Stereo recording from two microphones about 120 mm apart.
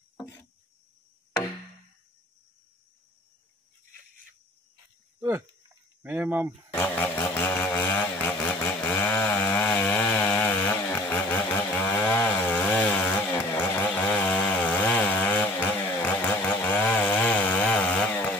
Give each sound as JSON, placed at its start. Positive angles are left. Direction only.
{"t": 0.2, "sound": "a sound", "side_deg": 20}
{"t": 6.0, "sound": "speech", "side_deg": -15}
{"t": 6.7, "sound": "chainsaw", "side_deg": 20}